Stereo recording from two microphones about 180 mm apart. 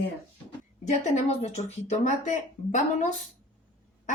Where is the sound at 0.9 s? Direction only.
40° left (ahead or behind).